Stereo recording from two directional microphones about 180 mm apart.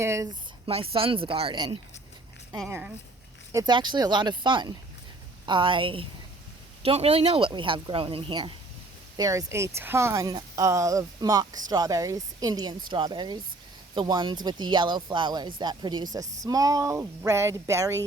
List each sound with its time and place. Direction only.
0.0 s speech: 15° right (ahead or behind)
0.9 s speech: 30° right (ahead or behind)
2.6 s speech: 10° right (ahead or behind)
3.5 s speech: 20° right (ahead or behind)